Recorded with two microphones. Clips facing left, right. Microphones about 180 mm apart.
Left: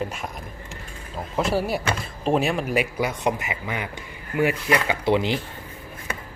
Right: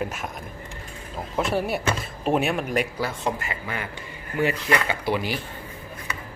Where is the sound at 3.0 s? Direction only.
20° left (ahead or behind).